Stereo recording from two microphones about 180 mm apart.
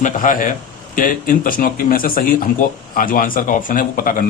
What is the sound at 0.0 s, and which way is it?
Speech, 50° left (ahead or behind).